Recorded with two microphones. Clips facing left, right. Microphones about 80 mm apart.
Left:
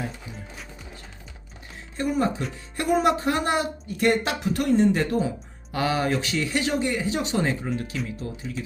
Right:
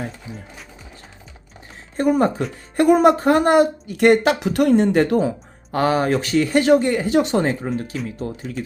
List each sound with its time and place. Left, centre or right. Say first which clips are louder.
2.0 s speech: right 7 dB; right
3.8 s speech: right 8 dB; right
5.7 s speech: right 6 dB; right